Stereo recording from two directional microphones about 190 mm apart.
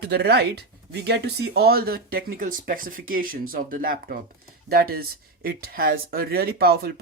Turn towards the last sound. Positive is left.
turn(degrees=-55)  # may be behind; listen again after turning